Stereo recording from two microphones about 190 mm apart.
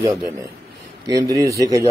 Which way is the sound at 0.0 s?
15° right (ahead or behind).